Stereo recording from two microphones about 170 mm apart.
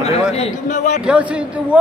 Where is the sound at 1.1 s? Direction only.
5° right (ahead or behind).